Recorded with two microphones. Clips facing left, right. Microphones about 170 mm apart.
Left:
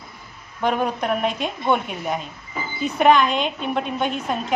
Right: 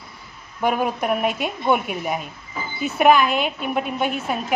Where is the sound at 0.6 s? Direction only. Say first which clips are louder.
Even; 5° right (ahead or behind).